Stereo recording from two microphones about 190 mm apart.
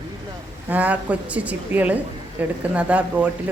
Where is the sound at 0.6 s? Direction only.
10° right (ahead or behind).